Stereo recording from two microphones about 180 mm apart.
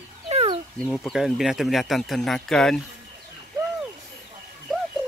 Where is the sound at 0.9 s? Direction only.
Centre (ahead or behind).